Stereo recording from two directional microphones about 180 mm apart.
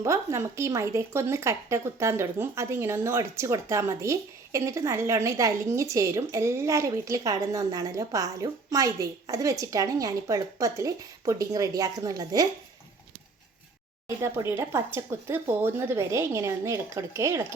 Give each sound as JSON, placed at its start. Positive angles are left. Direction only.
{"t": 0.0, "sound": "speech", "side_deg": -15}
{"t": 14.2, "sound": "speech", "side_deg": -15}